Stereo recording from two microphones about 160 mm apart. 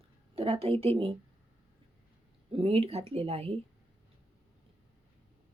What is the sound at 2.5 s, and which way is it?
Speech, 35° right (ahead or behind).